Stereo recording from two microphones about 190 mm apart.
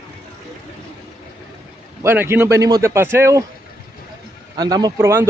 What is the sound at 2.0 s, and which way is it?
Speech, 10° right (ahead or behind).